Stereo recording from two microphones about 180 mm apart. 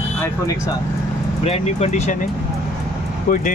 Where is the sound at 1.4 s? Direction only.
35° left (ahead or behind).